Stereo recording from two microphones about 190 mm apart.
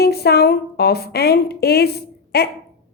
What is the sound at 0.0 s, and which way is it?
A woman's voice, 55° left (ahead or behind).